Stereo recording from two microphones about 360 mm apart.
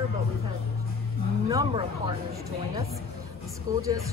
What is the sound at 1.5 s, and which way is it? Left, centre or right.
Speech, centre.